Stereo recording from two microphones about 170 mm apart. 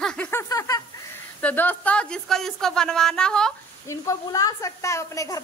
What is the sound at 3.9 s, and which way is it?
A woman's voice, 20° left (ahead or behind).